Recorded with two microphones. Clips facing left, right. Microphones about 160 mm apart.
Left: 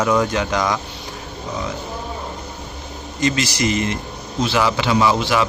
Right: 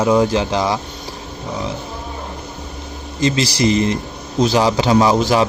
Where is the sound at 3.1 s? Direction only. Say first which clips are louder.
Right 3 dB; 30° right (ahead or behind).